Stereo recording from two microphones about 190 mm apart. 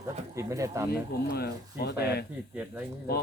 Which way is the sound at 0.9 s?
55° left (ahead or behind).